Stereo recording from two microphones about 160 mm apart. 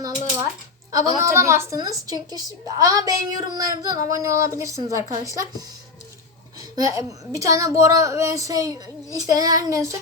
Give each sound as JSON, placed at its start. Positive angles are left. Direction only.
{"t": 0.9, "sound": "a child's voice", "side_deg": -20}